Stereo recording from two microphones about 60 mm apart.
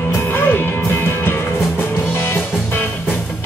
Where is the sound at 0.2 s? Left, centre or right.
Left.